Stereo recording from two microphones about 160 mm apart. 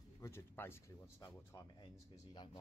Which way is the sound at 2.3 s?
30° left (ahead or behind).